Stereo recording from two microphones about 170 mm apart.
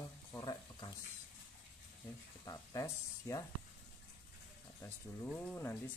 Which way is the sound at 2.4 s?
20° left (ahead or behind).